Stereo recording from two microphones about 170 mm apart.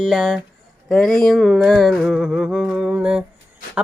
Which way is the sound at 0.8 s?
Centre (ahead or behind).